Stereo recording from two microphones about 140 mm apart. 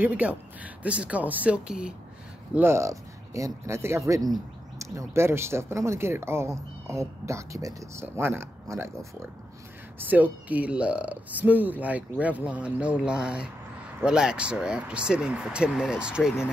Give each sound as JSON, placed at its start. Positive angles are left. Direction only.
{"t": 0.0, "sound": "speech", "side_deg": -10}
{"t": 2.5, "sound": "speech", "side_deg": -20}
{"t": 9.9, "sound": "speech", "side_deg": -10}